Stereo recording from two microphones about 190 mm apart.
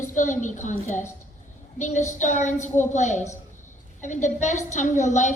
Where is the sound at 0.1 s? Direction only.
40° left (ahead or behind).